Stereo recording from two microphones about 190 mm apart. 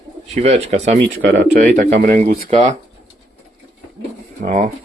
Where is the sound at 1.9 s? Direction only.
50° right (ahead or behind).